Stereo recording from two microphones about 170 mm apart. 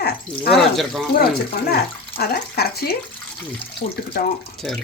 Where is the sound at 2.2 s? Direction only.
70° left (ahead or behind).